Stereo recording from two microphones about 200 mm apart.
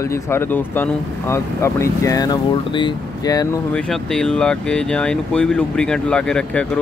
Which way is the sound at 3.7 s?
5° left (ahead or behind).